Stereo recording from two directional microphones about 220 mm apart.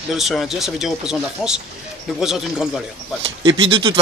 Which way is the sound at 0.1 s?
Centre (ahead or behind).